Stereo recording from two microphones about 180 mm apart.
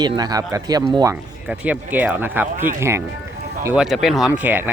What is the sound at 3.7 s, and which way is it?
Speech, centre (ahead or behind).